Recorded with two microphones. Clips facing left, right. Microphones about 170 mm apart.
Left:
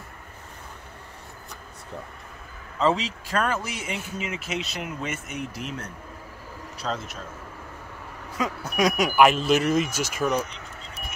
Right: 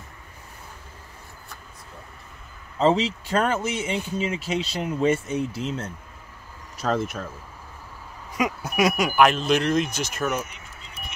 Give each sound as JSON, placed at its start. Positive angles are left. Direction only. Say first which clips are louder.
{"t": 2.8, "sound": "speech", "louder": "right 3 dB", "side_deg": -30}
{"t": 6.8, "sound": "speech", "louder": "right 7 dB", "side_deg": -55}
{"t": 8.4, "sound": "speech", "louder": "right 2 dB", "side_deg": -10}